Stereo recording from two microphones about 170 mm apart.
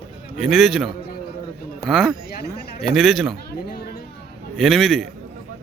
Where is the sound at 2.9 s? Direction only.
Centre (ahead or behind).